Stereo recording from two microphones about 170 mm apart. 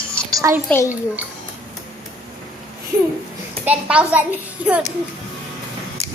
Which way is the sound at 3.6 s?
10° right (ahead or behind).